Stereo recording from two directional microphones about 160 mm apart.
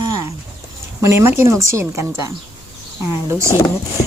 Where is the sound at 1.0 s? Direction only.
15° right (ahead or behind).